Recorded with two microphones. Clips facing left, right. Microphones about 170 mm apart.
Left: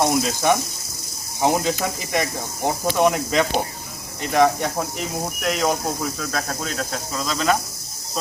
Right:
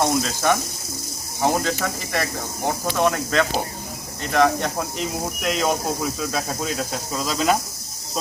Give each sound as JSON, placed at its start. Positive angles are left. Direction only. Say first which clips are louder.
{"t": 0.0, "sound": "speech", "louder": "left 1 dB", "side_deg": 15}